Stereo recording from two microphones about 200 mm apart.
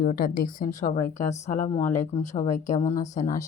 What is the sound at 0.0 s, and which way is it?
Speech, 45° left (ahead or behind).